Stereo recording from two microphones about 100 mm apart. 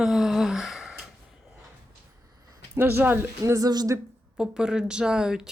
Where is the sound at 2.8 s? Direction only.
20° right (ahead or behind).